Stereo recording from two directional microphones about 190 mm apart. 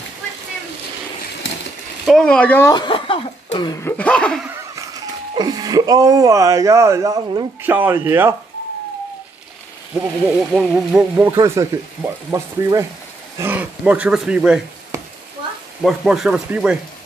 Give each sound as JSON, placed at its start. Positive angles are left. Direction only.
{"t": 2.0, "sound": "speech", "side_deg": 5}
{"t": 2.7, "sound": "speech", "side_deg": 25}
{"t": 3.9, "sound": "speech", "side_deg": 5}
{"t": 5.3, "sound": "speech", "side_deg": -20}
{"t": 10.5, "sound": "speech", "side_deg": -5}
{"t": 15.8, "sound": "speech", "side_deg": 0}